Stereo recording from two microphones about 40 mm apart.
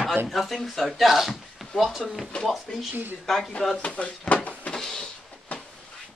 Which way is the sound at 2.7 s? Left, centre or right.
Centre.